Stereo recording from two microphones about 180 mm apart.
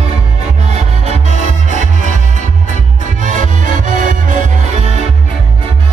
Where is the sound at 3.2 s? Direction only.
45° right (ahead or behind).